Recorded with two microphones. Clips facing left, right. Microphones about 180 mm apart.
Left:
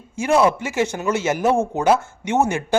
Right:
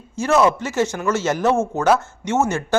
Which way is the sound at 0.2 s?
10° left (ahead or behind).